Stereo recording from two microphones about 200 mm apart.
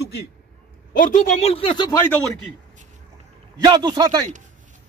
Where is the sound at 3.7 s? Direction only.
20° right (ahead or behind).